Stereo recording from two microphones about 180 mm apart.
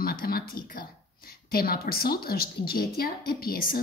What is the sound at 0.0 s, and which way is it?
A woman's voice, 55° left (ahead or behind).